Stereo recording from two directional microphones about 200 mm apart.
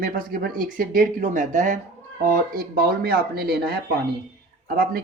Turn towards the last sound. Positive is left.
turn(degrees=-45)  # may be behind; listen again after turning